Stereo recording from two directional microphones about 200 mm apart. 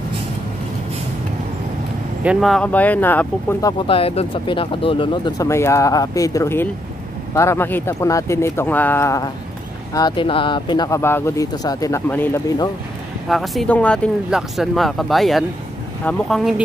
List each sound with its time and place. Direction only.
2.2 s speech: centre (ahead or behind)
3.8 s speech: 30° left (ahead or behind); by 12.5 s 10° left (ahead or behind)
13.3 s speech: centre (ahead or behind)